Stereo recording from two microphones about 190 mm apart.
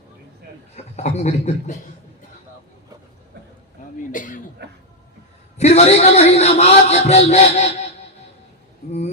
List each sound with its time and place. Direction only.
0.9 s a man's voice: 35° left (ahead or behind)
4.1 s speech: 45° left (ahead or behind)
5.5 s a man's voice: 35° left (ahead or behind)